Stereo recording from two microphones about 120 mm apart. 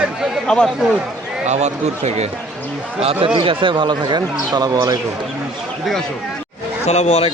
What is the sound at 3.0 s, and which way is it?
A man's voice, 50° right (ahead or behind).